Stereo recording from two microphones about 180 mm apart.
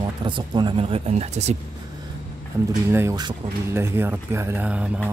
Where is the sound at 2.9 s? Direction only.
15° right (ahead or behind).